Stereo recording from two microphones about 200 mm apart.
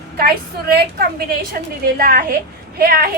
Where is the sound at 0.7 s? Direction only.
50° right (ahead or behind).